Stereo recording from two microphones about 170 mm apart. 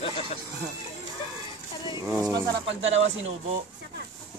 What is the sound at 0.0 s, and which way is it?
Music, 35° left (ahead or behind).